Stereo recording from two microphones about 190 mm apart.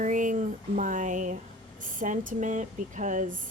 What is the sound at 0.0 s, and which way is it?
Speech, 45° right (ahead or behind).